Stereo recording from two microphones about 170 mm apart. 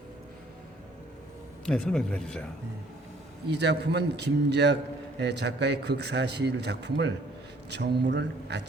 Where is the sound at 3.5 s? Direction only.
90° right.